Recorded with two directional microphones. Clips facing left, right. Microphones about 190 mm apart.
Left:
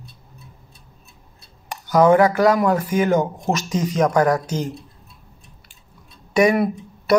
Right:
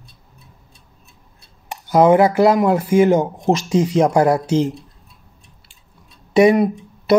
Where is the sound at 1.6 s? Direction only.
25° right (ahead or behind).